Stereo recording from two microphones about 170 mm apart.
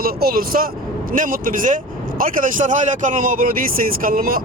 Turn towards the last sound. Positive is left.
turn(degrees=-55)  # may be behind; listen again after turning